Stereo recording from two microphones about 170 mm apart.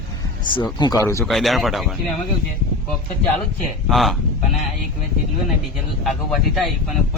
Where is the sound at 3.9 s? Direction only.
Centre (ahead or behind).